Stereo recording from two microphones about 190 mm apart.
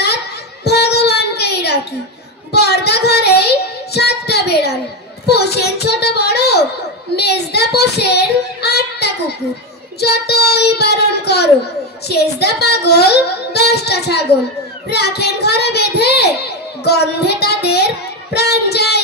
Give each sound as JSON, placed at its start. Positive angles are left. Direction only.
{"t": 0.7, "sound": "child singing", "side_deg": 60}
{"t": 14.9, "sound": "a child's voice", "side_deg": 60}
{"t": 16.8, "sound": "child singing", "side_deg": 60}